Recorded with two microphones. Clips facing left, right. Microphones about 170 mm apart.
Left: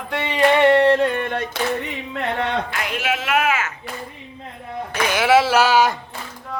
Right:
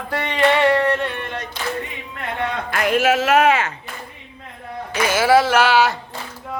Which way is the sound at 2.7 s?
50° right (ahead or behind).